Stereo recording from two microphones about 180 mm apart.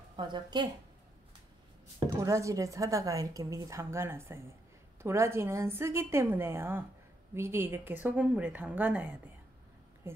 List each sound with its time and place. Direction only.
0.1 s a woman's voice: 25° right (ahead or behind)
2.1 s a woman's voice: 15° right (ahead or behind)